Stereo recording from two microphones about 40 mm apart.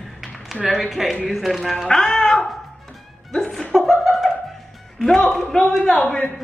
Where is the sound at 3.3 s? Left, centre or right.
Centre.